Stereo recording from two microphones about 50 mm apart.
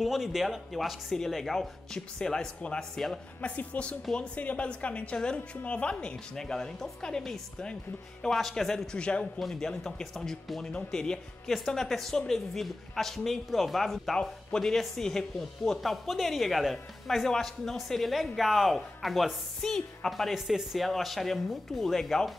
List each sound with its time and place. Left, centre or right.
0.0 s speech: centre
3.3 s a woman's voice: left; by 8.8 s centre
8.9 s a woman's voice: centre
10.1 s speech: centre
10.6 s speech: centre
19.6 s speech: centre